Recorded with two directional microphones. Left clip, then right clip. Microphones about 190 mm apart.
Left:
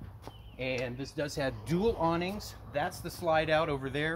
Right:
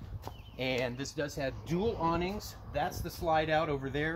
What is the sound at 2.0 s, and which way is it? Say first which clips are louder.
Speech: left 1 dB; 25° left (ahead or behind).